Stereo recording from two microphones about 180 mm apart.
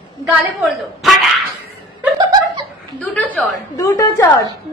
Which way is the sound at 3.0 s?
10° left (ahead or behind).